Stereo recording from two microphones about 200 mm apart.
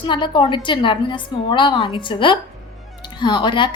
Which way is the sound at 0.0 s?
25° left (ahead or behind).